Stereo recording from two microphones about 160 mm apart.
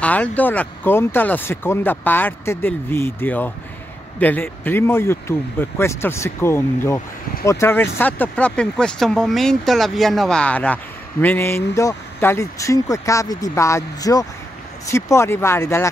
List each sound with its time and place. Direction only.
0.0 s speech: 10° left (ahead or behind)